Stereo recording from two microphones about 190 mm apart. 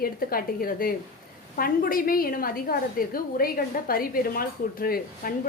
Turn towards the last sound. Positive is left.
turn(degrees=50)  # may be behind; listen again after turning